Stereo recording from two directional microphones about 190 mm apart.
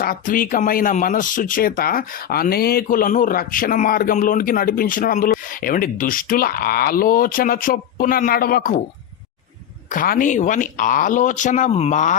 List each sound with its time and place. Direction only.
0.0 s speech: 50° left (ahead or behind)
9.9 s speech: 45° left (ahead or behind)